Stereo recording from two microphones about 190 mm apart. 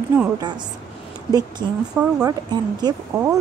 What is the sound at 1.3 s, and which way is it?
Speech, 20° right (ahead or behind).